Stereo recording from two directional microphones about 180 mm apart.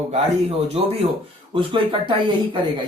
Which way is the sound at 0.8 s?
30° right (ahead or behind).